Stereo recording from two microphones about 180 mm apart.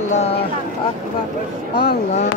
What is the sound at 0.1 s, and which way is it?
Speech, 35° left (ahead or behind).